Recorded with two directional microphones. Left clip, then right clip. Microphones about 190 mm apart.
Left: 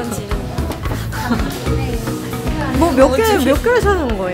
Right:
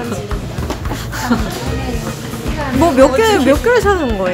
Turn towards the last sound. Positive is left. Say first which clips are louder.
# right 2 dB
turn(degrees=0)  # may be behind; listen again after turning